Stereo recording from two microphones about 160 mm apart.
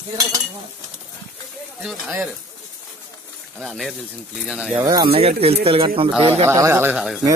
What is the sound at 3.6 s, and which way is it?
Speech, centre (ahead or behind).